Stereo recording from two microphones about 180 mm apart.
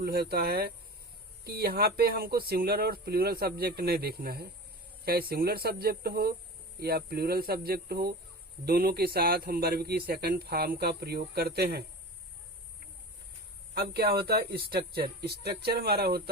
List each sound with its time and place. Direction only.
0.0 s a man's voice: 60° right (ahead or behind)
13.7 s a man's voice: 60° right (ahead or behind)